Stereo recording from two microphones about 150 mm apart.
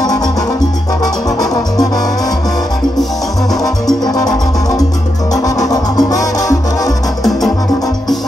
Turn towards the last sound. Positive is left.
turn(degrees=25)  # may be behind; listen again after turning